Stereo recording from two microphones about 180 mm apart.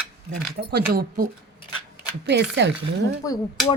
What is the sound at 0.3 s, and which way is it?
Speech, 60° right (ahead or behind).